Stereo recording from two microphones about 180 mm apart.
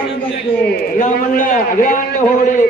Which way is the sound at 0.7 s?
45° left (ahead or behind).